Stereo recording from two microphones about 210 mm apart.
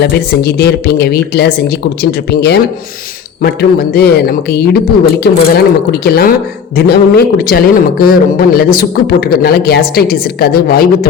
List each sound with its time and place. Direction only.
0.0 s speech: 50° left (ahead or behind)